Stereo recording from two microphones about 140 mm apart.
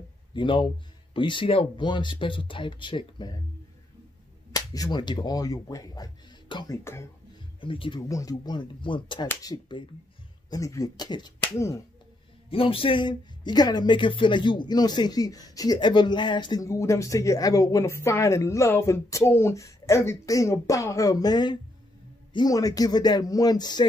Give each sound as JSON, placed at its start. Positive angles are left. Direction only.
{"t": 0.3, "sound": "speech", "side_deg": 35}
{"t": 4.6, "sound": "speech", "side_deg": 25}
{"t": 6.8, "sound": "speech", "side_deg": 20}
{"t": 7.6, "sound": "speech", "side_deg": 40}
{"t": 8.1, "sound": "speech", "side_deg": 25}
{"t": 11.4, "sound": "speech", "side_deg": 20}
{"t": 12.4, "sound": "speech", "side_deg": 40}
{"t": 16.6, "sound": "speech", "side_deg": 20}